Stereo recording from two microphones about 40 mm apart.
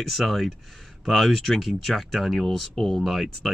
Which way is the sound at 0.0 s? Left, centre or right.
Centre.